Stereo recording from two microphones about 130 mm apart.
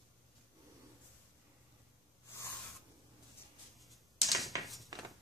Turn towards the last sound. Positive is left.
turn(degrees=0)  # may be behind; listen again after turning